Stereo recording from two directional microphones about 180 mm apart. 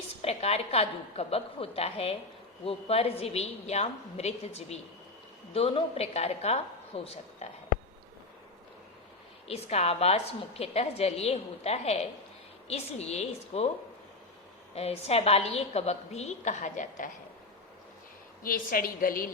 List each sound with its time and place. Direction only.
0.2 s a woman's voice: 35° left (ahead or behind)
9.5 s a woman's voice: 35° left (ahead or behind)
14.8 s a woman's voice: 35° left (ahead or behind)
18.4 s a woman's voice: 50° left (ahead or behind)